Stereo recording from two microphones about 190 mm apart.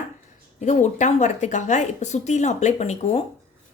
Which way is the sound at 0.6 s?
40° left (ahead or behind).